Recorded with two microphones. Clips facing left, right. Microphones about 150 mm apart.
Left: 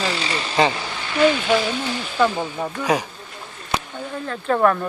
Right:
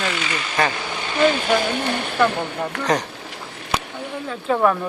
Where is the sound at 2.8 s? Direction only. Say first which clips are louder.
Even; 10° left (ahead or behind).